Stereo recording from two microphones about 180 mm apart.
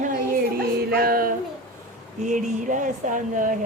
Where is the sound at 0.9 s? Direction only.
55° right (ahead or behind).